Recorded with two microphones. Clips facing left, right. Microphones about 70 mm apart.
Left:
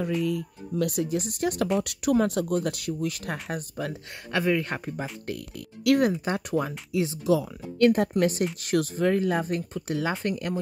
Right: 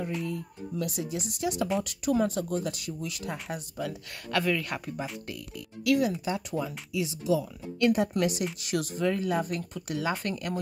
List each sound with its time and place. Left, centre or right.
0.2 s speech: left
0.8 s speech: left
1.8 s speech: left
4.3 s speech: left
5.9 s speech: left
6.9 s speech: left